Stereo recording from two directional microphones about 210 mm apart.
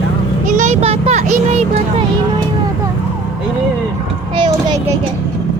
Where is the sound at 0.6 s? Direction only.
30° right (ahead or behind).